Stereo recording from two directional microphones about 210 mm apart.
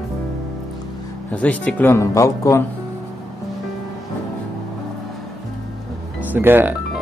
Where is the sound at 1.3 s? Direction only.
5° left (ahead or behind).